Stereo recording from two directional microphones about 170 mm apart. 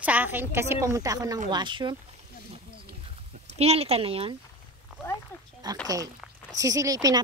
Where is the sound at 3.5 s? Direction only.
35° right (ahead or behind).